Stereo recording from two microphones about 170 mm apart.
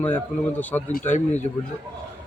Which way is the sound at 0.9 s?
50° left (ahead or behind).